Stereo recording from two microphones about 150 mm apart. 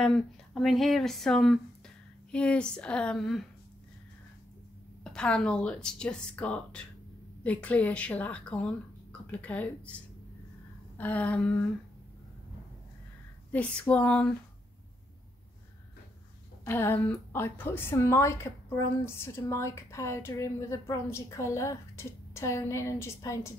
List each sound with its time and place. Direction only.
0.0 s a woman's voice: 5° left (ahead or behind)
5.0 s a woman's voice: 5° left (ahead or behind)
13.5 s a woman's voice: 10° left (ahead or behind)
16.6 s a woman's voice: 15° left (ahead or behind)